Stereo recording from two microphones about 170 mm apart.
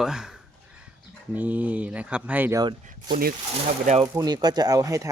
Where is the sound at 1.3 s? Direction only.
10° right (ahead or behind).